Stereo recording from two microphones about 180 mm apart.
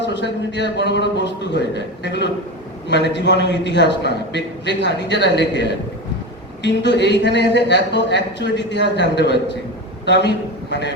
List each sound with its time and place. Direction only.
0.0 s a man's voice: 75° left (ahead or behind)